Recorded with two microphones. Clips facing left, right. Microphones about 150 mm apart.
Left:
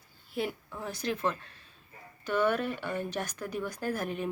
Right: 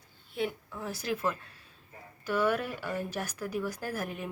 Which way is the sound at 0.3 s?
Centre (ahead or behind).